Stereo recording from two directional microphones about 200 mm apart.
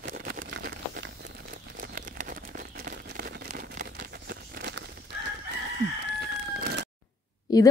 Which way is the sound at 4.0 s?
55° right (ahead or behind).